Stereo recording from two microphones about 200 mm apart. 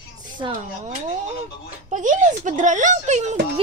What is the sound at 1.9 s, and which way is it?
Speech, 40° right (ahead or behind).